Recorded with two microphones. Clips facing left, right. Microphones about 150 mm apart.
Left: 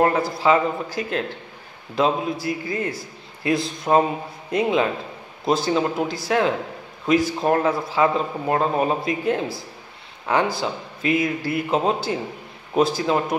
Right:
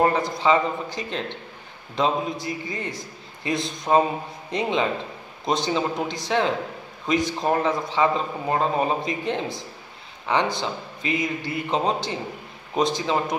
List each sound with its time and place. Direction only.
0.1 s a man's voice: 5° left (ahead or behind)
11.1 s speech: 20° right (ahead or behind)
11.7 s a man's voice: 5° left (ahead or behind)